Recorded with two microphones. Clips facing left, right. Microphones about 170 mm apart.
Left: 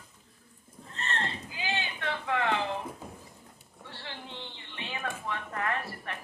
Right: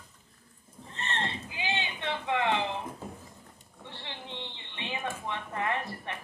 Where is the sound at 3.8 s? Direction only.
20° right (ahead or behind).